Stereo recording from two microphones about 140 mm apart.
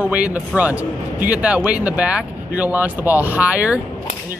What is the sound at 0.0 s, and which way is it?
Speech, 10° right (ahead or behind).